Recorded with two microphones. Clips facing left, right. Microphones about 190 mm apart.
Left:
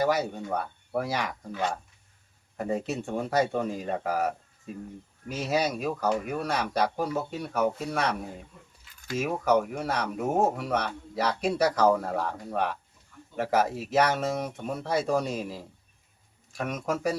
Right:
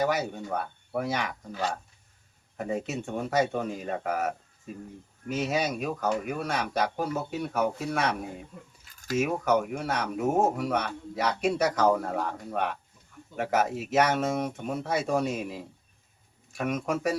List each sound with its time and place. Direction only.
0.0 s speech: centre (ahead or behind)
2.6 s speech: centre (ahead or behind)
8.8 s a sound: 45° right (ahead or behind)
9.1 s speech: centre (ahead or behind)